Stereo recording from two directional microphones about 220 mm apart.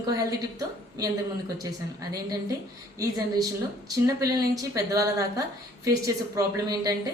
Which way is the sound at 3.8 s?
15° right (ahead or behind).